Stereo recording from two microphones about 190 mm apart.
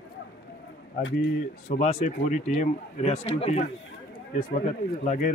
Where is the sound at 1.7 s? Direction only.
35° left (ahead or behind).